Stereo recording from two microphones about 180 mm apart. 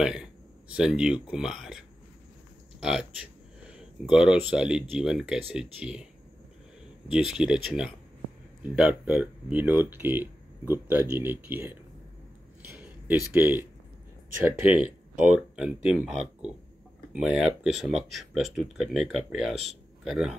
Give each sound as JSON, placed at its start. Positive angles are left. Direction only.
{"t": 0.0, "sound": "speech", "side_deg": -5}
{"t": 7.1, "sound": "speech", "side_deg": -5}
{"t": 12.7, "sound": "speech", "side_deg": -10}
{"t": 14.7, "sound": "speech", "side_deg": -5}